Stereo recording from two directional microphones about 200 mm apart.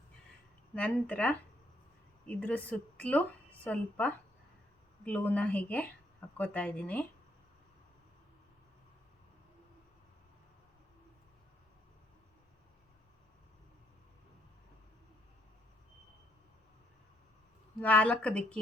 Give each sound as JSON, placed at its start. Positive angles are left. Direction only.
{"t": 0.7, "sound": "a woman's voice", "side_deg": 5}
{"t": 17.7, "sound": "speech", "side_deg": 5}